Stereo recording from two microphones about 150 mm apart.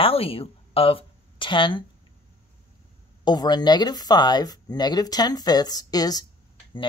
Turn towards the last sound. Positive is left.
turn(degrees=25)  # may be behind; listen again after turning